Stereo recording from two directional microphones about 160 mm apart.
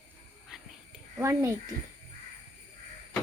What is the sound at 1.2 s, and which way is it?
Speech, 15° right (ahead or behind).